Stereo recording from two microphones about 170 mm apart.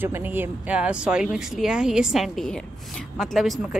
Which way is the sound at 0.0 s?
10° right (ahead or behind).